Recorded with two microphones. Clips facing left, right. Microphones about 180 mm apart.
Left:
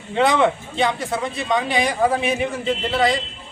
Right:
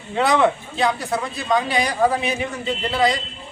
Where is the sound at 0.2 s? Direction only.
Centre (ahead or behind).